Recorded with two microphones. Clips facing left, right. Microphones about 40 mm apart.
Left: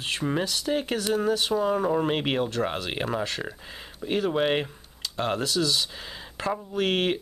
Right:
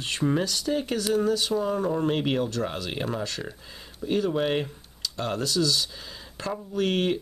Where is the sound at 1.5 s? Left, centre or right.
Centre.